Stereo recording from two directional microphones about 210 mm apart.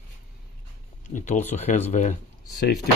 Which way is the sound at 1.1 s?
35° left (ahead or behind).